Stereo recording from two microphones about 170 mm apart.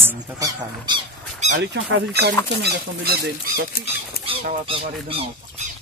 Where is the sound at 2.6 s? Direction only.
75° right (ahead or behind).